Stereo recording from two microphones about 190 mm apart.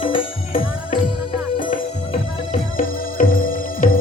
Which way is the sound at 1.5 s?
45° left (ahead or behind).